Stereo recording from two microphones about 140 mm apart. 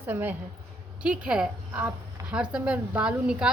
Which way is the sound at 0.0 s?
15° right (ahead or behind).